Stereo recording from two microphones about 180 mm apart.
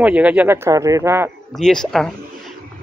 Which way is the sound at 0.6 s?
20° right (ahead or behind).